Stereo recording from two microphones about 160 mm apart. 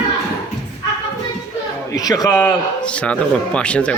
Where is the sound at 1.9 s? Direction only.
20° left (ahead or behind).